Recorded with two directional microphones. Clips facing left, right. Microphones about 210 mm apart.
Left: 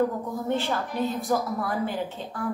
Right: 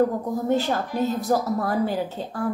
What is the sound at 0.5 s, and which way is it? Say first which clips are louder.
A woman's voice: right 4 dB; 40° right (ahead or behind).